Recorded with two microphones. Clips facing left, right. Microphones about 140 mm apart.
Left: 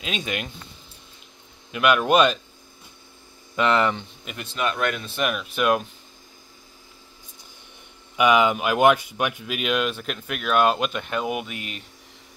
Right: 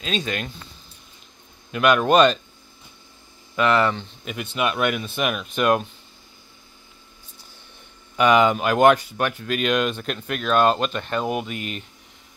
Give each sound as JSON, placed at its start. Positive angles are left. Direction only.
{"t": 0.0, "sound": "speech", "side_deg": 15}
{"t": 1.7, "sound": "speech", "side_deg": 5}
{"t": 3.5, "sound": "speech", "side_deg": 20}
{"t": 4.2, "sound": "speech", "side_deg": 0}
{"t": 4.6, "sound": "speech", "side_deg": -10}
{"t": 8.2, "sound": "speech", "side_deg": 5}